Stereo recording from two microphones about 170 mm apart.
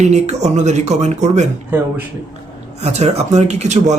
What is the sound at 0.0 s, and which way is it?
Speech, 40° right (ahead or behind).